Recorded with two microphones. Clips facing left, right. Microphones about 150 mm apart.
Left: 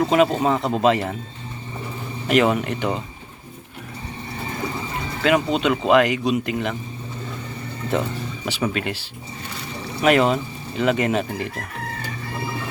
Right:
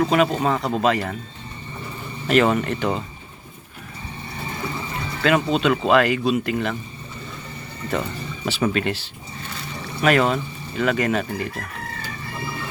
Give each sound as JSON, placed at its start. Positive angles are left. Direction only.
{"t": 0.1, "sound": "speech", "side_deg": 20}
{"t": 2.2, "sound": "speech", "side_deg": 15}
{"t": 5.2, "sound": "speech", "side_deg": 15}
{"t": 8.4, "sound": "speech", "side_deg": 10}
{"t": 10.0, "sound": "speech", "side_deg": 20}